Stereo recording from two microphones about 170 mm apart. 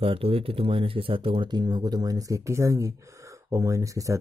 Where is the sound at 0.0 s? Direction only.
35° right (ahead or behind).